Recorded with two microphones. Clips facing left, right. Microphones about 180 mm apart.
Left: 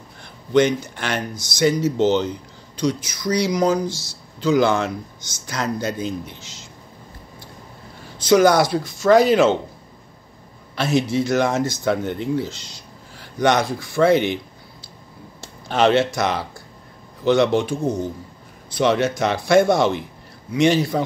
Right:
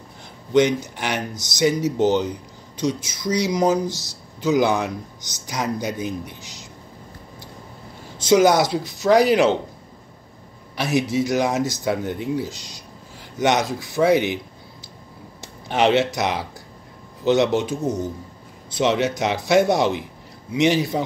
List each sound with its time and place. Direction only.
0.5 s speech: 15° right (ahead or behind)
8.3 s speech: 20° right (ahead or behind)
10.8 s speech: 15° right (ahead or behind)
15.4 s a man's voice: 15° right (ahead or behind)
18.8 s speech: 20° right (ahead or behind)